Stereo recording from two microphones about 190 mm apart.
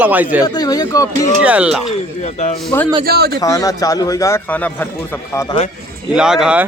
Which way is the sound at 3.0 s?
55° right (ahead or behind).